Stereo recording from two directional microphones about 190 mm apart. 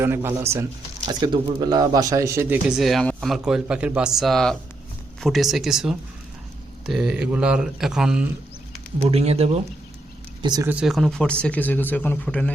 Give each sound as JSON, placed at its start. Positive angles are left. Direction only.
{"t": 0.0, "sound": "speech", "side_deg": -10}
{"t": 1.0, "sound": "speech", "side_deg": -25}
{"t": 9.0, "sound": "speech", "side_deg": -35}
{"t": 10.4, "sound": "speech", "side_deg": -20}
{"t": 10.7, "sound": "speech", "side_deg": -5}